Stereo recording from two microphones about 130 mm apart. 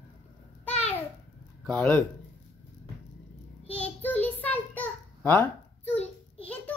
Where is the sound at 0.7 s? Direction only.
10° left (ahead or behind).